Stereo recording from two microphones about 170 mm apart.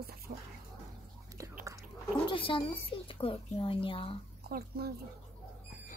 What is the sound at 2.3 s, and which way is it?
A woman's voice, 30° left (ahead or behind).